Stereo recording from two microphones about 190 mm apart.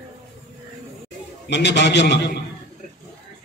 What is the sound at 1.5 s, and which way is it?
Speech, 65° left (ahead or behind).